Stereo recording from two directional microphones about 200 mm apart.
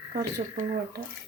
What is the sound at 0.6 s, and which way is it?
Speech, 40° right (ahead or behind).